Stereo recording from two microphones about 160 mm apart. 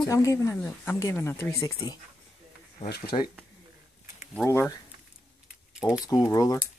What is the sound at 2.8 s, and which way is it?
Speech, 75° left (ahead or behind).